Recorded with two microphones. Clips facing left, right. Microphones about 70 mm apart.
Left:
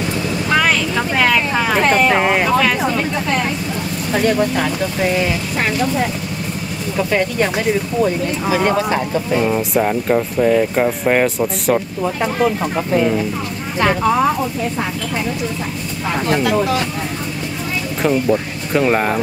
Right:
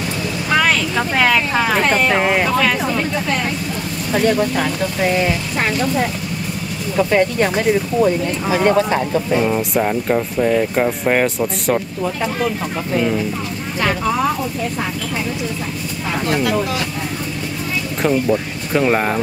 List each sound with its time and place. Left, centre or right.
0.5 s vehicle: centre
4.1 s speech: centre
12.0 s speech: centre
13.7 s speech: centre
16.3 s speech: centre
18.0 s speech: centre